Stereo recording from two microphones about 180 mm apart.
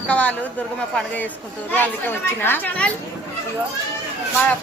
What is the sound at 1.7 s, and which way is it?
Speech, 10° left (ahead or behind).